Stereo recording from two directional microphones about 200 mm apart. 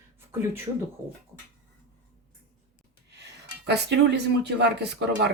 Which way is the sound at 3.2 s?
55° right (ahead or behind).